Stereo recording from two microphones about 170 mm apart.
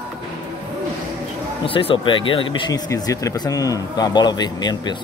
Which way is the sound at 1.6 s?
30° left (ahead or behind).